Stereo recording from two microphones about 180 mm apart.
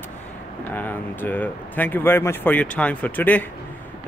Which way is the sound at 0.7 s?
10° left (ahead or behind).